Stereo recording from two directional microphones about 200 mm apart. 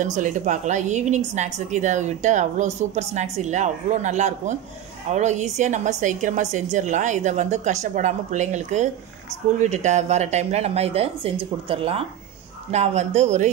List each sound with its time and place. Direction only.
0.0 s a woman's voice: 40° right (ahead or behind)